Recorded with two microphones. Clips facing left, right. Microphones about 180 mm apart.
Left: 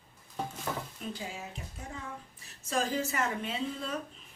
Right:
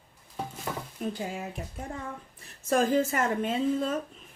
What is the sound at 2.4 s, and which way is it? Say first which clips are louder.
Speech: right 7 dB; 55° right (ahead or behind).